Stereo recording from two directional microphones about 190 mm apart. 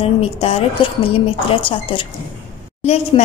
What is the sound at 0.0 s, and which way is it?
A woman's voice, 30° left (ahead or behind).